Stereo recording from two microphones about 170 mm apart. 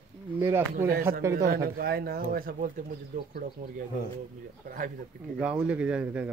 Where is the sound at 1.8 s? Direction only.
60° right (ahead or behind).